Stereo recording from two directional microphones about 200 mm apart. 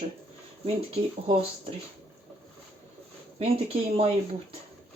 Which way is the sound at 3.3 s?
30° right (ahead or behind).